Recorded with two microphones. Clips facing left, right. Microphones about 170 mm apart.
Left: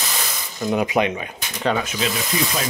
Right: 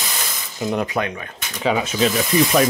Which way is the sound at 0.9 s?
20° left (ahead or behind).